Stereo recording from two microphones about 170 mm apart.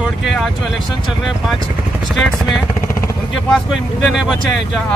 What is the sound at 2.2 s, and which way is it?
Speech, 5° left (ahead or behind).